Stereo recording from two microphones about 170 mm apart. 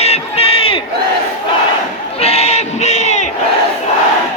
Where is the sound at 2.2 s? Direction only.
40° left (ahead or behind).